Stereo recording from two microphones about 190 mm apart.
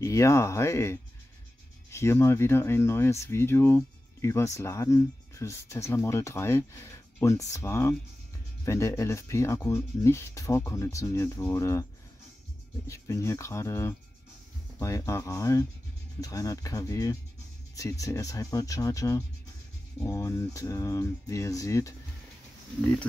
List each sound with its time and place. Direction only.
0.0 s speech: 15° left (ahead or behind)
12.8 s speech: 15° left (ahead or behind)